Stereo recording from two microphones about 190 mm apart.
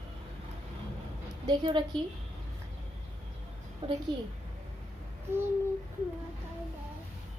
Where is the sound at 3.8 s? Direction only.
25° right (ahead or behind).